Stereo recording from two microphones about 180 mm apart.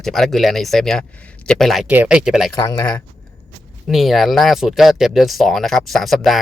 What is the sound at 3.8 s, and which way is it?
Speech, centre (ahead or behind).